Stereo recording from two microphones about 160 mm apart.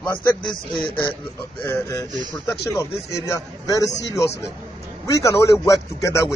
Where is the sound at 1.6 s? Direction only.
15° left (ahead or behind).